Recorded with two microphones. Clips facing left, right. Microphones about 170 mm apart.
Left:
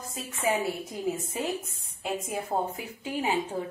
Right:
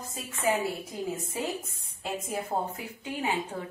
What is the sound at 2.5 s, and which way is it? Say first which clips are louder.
Speech: left 2 dB; centre (ahead or behind).